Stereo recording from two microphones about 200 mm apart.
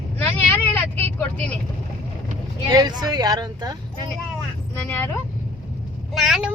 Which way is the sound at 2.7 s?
20° right (ahead or behind).